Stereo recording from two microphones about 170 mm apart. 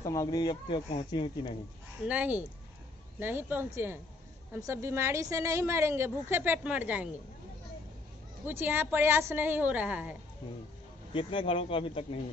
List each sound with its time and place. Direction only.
0.0 s speech: 20° left (ahead or behind)
2.0 s a woman's voice: 10° right (ahead or behind)
8.5 s a woman's voice: 15° right (ahead or behind)
11.1 s speech: 30° left (ahead or behind)